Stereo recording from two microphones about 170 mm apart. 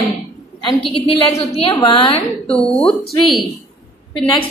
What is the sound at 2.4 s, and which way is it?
A woman's voice, 5° left (ahead or behind).